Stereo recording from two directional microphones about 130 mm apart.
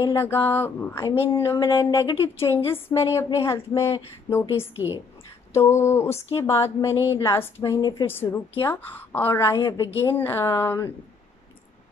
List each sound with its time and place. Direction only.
0.1 s a woman's voice: 20° left (ahead or behind)
4.7 s a woman's voice: 15° right (ahead or behind)
5.5 s a woman's voice: 20° left (ahead or behind)
8.1 s speech: 15° left (ahead or behind)
9.8 s a woman's voice: 15° left (ahead or behind)